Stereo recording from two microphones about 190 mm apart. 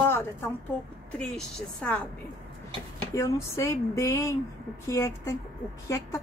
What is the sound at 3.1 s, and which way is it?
Speech, 15° left (ahead or behind).